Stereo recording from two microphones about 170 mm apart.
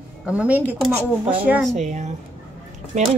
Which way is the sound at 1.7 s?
45° right (ahead or behind).